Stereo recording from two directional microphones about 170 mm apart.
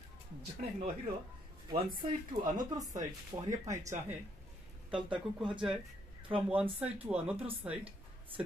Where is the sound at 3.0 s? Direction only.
45° right (ahead or behind).